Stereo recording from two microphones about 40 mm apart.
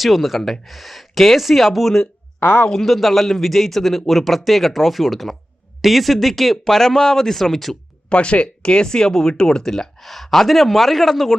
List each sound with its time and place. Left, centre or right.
0.0 s speech: centre
8.1 s speech: left; by 11.3 s centre